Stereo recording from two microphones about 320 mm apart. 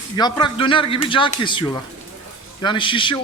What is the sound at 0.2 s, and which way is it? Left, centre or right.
Speech, centre.